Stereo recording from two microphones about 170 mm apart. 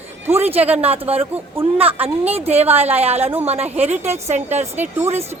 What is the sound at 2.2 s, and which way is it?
A woman's voice, 35° right (ahead or behind).